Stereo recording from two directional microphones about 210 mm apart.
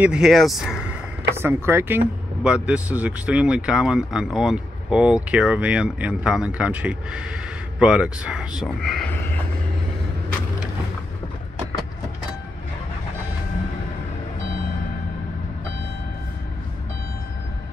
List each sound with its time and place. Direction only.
0.0 s speech: 5° right (ahead or behind)